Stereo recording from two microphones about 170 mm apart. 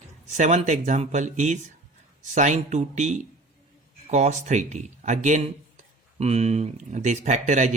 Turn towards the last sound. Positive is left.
turn(degrees=-45)  # may be behind; listen again after turning